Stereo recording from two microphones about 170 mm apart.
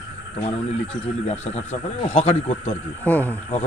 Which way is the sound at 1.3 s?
35° left (ahead or behind).